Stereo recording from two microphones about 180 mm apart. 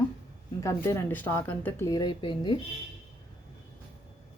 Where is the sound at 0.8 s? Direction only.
10° left (ahead or behind).